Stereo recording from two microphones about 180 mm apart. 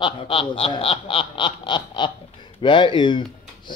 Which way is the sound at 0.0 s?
30° left (ahead or behind).